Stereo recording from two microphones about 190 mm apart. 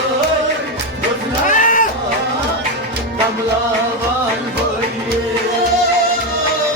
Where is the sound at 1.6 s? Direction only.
45° left (ahead or behind).